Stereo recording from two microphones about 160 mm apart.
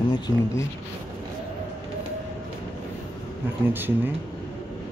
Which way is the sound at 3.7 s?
10° right (ahead or behind).